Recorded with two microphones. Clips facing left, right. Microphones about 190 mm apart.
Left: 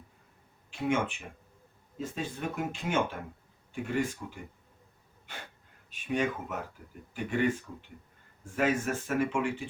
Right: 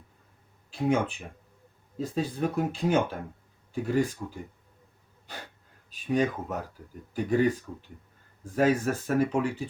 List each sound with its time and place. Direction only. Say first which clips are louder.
0.7 s speech: right 4 dB; 35° right (ahead or behind)
5.3 s wheeze: right 3 dB; 35° right (ahead or behind)
5.9 s speech: right 4 dB; 35° right (ahead or behind)